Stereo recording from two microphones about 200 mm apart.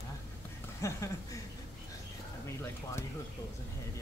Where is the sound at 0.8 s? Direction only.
15° left (ahead or behind).